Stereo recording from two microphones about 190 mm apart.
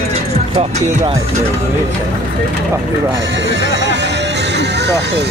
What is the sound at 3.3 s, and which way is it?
Music, 70° right (ahead or behind).